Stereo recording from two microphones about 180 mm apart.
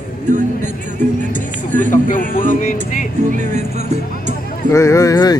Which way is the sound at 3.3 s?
40° right (ahead or behind).